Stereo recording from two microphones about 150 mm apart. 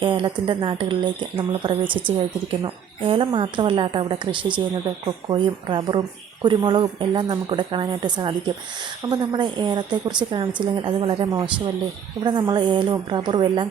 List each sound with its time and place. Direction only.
0.0 s speech: 30° right (ahead or behind)